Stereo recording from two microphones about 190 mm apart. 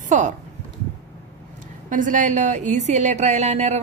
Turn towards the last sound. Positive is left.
turn(degrees=-35)  # may be behind; listen again after turning